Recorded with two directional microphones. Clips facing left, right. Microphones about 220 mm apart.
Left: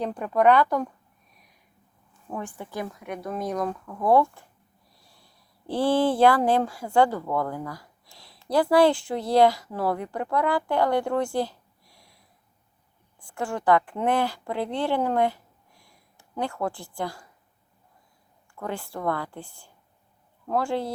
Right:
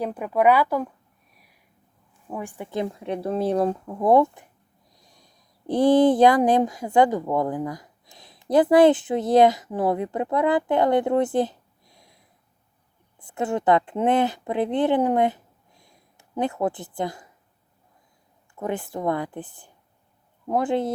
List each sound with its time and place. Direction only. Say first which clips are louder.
0.0 s speech: right 1 dB; 5° right (ahead or behind)
2.2 s a woman's voice: right 2 dB; 15° right (ahead or behind)
2.6 s speech: right 6 dB; 25° right (ahead or behind)
18.5 s speech: right 4 dB; 20° right (ahead or behind)